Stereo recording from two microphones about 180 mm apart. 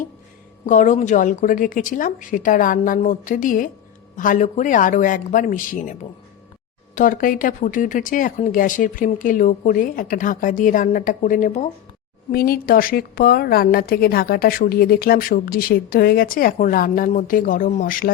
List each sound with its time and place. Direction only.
0.6 s speech: 45° left (ahead or behind)
12.3 s a woman's voice: 55° left (ahead or behind)